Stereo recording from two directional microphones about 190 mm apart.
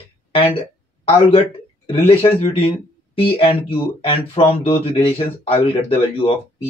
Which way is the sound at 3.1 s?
30° left (ahead or behind).